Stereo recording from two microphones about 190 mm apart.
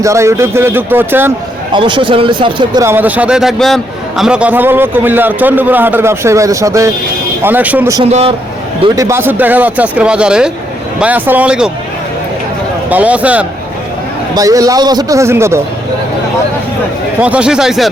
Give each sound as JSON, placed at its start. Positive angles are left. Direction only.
{"t": 0.0, "sound": "a man's voice", "side_deg": -15}
{"t": 1.7, "sound": "speech", "side_deg": -25}
{"t": 2.8, "sound": "a man's voice", "side_deg": -10}
{"t": 9.0, "sound": "a man's voice", "side_deg": -15}
{"t": 12.9, "sound": "a man's voice", "side_deg": -5}
{"t": 14.3, "sound": "a man's voice", "side_deg": -20}
{"t": 17.2, "sound": "a man's voice", "side_deg": -5}